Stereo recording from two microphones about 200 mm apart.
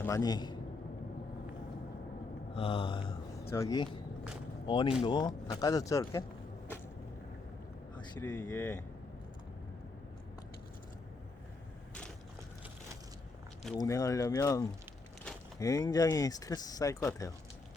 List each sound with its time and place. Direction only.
0.0 s a man's voice: 15° left (ahead or behind)
2.6 s a sound: 25° left (ahead or behind)
3.5 s speech: 15° left (ahead or behind)
4.6 s a sound: 25° left (ahead or behind)
5.0 s speech: 20° left (ahead or behind)
8.3 s speech: 20° left (ahead or behind)
13.8 s speech: 15° left (ahead or behind)